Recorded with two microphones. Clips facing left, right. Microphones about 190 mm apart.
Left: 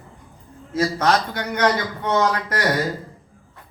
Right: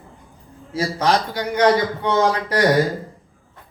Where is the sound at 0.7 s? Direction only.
10° right (ahead or behind).